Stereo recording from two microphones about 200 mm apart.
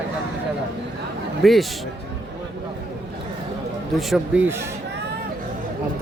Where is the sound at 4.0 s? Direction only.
Centre (ahead or behind).